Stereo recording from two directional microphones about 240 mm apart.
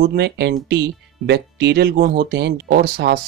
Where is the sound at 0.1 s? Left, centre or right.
Right.